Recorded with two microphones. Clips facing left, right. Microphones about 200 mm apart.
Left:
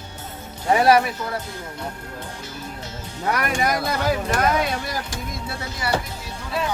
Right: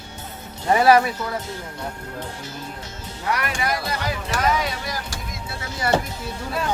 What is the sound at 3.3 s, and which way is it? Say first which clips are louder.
Speech: left 5 dB; 50° left (ahead or behind).